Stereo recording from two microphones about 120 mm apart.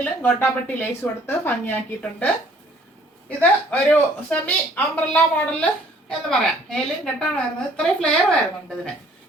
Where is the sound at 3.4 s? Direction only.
15° left (ahead or behind).